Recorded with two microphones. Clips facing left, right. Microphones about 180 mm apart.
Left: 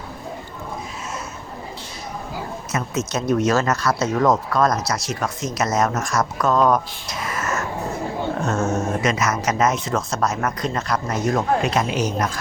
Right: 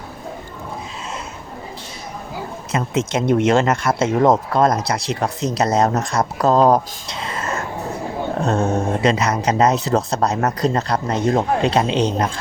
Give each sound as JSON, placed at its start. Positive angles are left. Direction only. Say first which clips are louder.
{"t": 2.7, "sound": "speech", "louder": "right 4 dB", "side_deg": -25}